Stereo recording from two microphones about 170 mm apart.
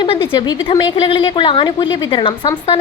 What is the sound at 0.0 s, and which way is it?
A woman's voice, 30° left (ahead or behind).